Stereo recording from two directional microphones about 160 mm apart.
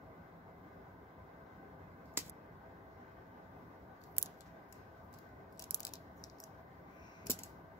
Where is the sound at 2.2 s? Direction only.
15° right (ahead or behind).